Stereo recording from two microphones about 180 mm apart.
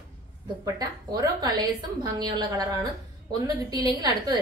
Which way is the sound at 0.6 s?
20° right (ahead or behind).